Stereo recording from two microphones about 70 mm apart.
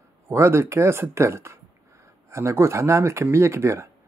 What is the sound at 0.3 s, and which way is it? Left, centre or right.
A man's voice, right.